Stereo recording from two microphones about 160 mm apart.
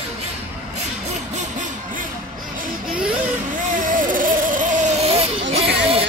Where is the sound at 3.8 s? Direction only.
55° right (ahead or behind); by 6.0 s 40° right (ahead or behind).